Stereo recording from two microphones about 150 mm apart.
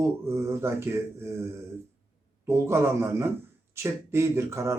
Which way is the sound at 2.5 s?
20° right (ahead or behind).